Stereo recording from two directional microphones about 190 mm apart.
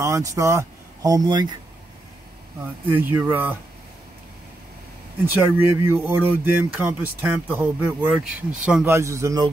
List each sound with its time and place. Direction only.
0.0 s speech: 15° right (ahead or behind)
2.9 s speech: 10° right (ahead or behind)
5.2 s speech: 10° right (ahead or behind)